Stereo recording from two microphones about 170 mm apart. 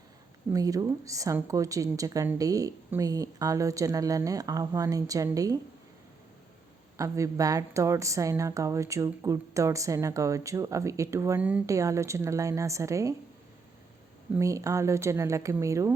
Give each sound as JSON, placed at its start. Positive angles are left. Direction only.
{"t": 0.5, "sound": "a woman's voice", "side_deg": -20}
{"t": 6.9, "sound": "a woman's voice", "side_deg": -20}
{"t": 14.3, "sound": "speech", "side_deg": -20}